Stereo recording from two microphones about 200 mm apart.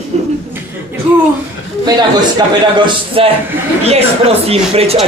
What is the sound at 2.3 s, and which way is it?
Speech, 25° right (ahead or behind).